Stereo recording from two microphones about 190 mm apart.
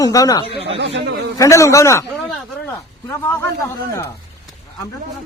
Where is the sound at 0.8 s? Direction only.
65° right (ahead or behind).